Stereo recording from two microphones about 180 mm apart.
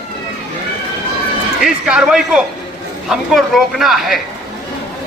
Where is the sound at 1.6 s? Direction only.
5° right (ahead or behind).